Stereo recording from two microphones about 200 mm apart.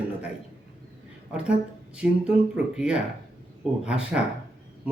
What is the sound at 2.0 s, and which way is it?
A man's voice, 5° right (ahead or behind).